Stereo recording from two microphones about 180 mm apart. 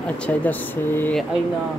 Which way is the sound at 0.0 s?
5° left (ahead or behind).